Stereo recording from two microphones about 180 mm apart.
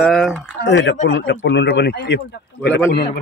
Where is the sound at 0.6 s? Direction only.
80° left.